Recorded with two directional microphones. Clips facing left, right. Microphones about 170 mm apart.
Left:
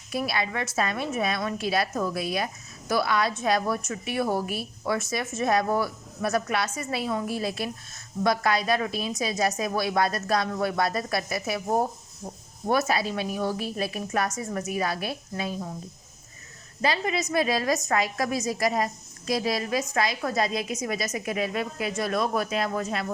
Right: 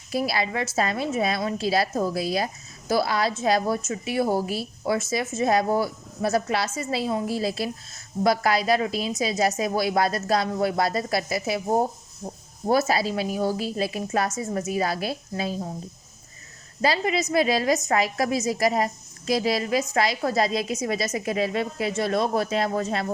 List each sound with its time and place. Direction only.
0.1 s a woman's voice: 30° right (ahead or behind)
16.8 s a woman's voice: 30° right (ahead or behind)